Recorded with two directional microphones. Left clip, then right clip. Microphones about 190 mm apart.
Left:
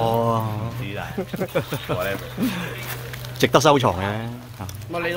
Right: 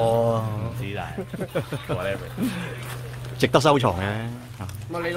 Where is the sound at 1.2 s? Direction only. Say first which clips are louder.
Left 5 dB; 35° left (ahead or behind).